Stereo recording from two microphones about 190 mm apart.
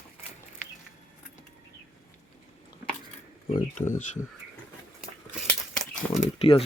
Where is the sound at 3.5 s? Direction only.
40° left (ahead or behind).